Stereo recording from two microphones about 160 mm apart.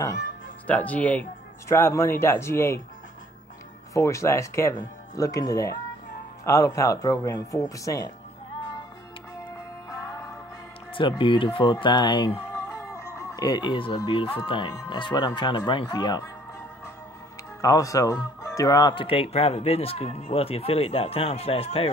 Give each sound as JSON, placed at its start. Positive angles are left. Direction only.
{"t": 0.7, "sound": "speech", "side_deg": 10}
{"t": 3.9, "sound": "speech", "side_deg": 20}
{"t": 9.8, "sound": "music", "side_deg": 15}
{"t": 10.9, "sound": "speech", "side_deg": 30}
{"t": 17.6, "sound": "speech", "side_deg": 20}